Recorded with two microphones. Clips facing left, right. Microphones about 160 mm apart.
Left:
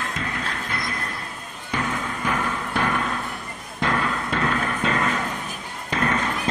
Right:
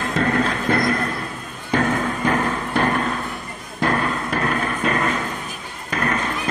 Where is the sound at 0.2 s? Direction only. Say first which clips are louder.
Right 10 dB; 60° right (ahead or behind).